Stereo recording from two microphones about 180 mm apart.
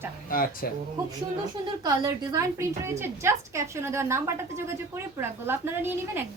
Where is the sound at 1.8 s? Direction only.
20° right (ahead or behind).